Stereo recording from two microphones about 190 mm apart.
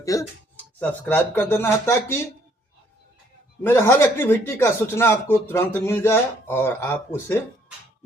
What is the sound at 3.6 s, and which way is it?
Speech, 10° left (ahead or behind).